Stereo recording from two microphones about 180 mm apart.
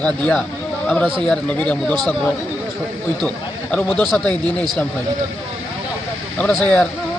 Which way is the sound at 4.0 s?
5° left (ahead or behind).